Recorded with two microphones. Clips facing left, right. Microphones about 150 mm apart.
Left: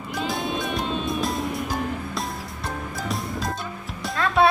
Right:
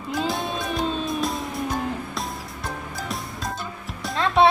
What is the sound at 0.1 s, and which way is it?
Music, centre (ahead or behind).